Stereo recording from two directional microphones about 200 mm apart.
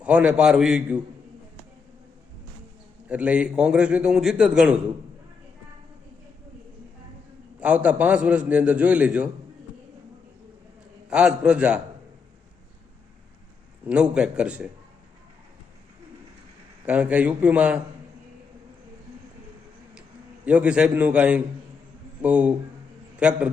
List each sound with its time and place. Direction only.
0.0 s a man's voice: 5° right (ahead or behind)
3.1 s a man's voice: 5° right (ahead or behind)
7.6 s a man's voice: 5° right (ahead or behind)
11.1 s a man's voice: 5° right (ahead or behind)
13.8 s a man's voice: 5° right (ahead or behind)
16.8 s a man's voice: 5° right (ahead or behind)
19.9 s a man's voice: 5° right (ahead or behind)